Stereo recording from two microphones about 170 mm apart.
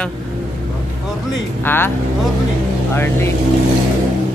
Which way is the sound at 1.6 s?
10° left (ahead or behind).